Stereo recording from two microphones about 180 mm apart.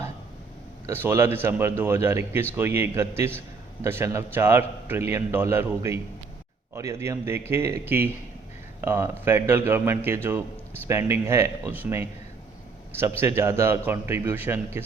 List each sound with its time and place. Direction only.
0.9 s a man's voice: 15° right (ahead or behind)